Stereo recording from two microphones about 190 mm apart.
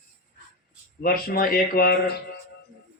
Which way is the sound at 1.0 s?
50° left (ahead or behind).